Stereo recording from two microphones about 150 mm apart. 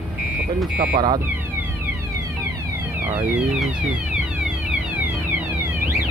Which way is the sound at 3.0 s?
15° right (ahead or behind).